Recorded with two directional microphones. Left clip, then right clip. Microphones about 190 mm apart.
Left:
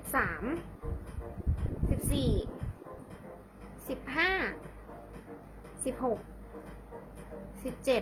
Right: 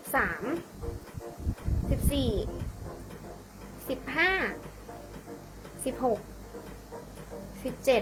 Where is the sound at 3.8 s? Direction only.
15° left (ahead or behind).